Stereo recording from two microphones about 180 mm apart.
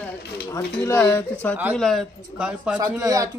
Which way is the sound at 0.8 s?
15° left (ahead or behind).